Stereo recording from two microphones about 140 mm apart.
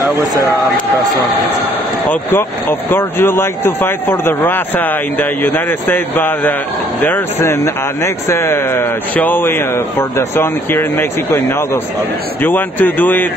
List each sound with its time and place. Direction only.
2.0 s speech: 15° left (ahead or behind)